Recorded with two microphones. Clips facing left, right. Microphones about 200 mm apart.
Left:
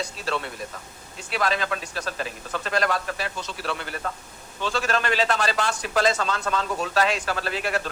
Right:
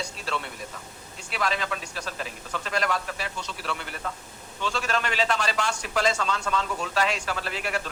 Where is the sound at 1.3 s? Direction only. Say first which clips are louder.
Left 3 dB; 40° left (ahead or behind).